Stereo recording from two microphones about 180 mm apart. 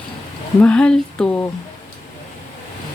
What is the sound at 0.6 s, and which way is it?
Speech, 5° left (ahead or behind).